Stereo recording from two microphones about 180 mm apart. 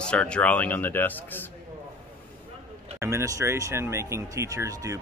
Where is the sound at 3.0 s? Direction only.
15° right (ahead or behind).